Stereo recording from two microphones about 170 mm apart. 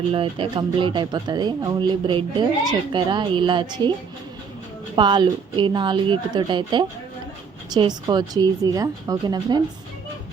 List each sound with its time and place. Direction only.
0.1 s speech: 30° right (ahead or behind)
4.9 s speech: 30° right (ahead or behind)